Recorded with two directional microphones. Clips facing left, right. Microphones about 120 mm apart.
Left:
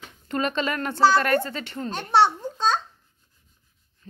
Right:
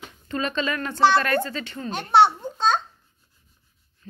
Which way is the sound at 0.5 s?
20° left (ahead or behind).